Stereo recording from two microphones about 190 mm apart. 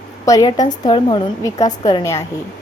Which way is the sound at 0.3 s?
20° left (ahead or behind).